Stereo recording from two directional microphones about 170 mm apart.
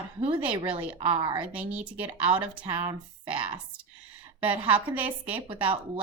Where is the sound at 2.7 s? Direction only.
30° right (ahead or behind).